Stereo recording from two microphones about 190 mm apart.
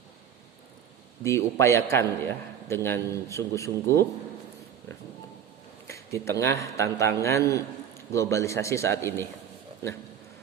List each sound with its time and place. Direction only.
1.2 s a man's voice: 15° left (ahead or behind)
5.9 s a man's voice: 15° left (ahead or behind)